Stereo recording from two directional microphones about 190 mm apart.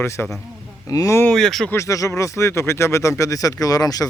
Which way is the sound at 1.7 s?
15° left (ahead or behind).